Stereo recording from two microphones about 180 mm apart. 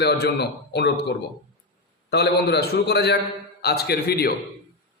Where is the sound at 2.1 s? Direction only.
65° left (ahead or behind).